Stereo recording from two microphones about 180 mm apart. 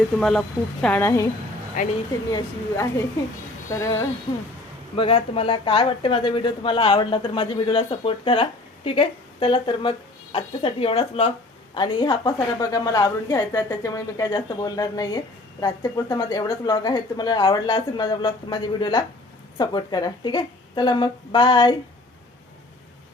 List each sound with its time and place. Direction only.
0.2 s speech: centre (ahead or behind)
1.8 s speech: 45° left (ahead or behind)
3.7 s speech: 20° left (ahead or behind)
4.9 s a woman's voice: 30° left (ahead or behind)